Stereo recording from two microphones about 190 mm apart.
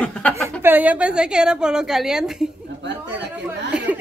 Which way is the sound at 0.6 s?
10° right (ahead or behind).